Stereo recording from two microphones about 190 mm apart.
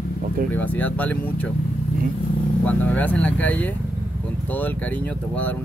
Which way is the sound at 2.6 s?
5° left (ahead or behind).